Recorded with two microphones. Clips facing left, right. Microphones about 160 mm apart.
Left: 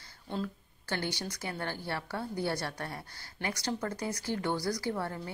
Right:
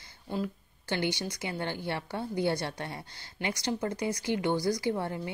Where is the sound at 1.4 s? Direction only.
20° right (ahead or behind).